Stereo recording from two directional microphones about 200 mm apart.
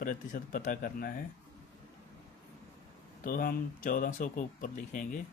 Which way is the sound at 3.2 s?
45° left (ahead or behind).